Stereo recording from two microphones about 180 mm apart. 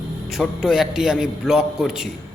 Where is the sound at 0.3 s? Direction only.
Centre (ahead or behind).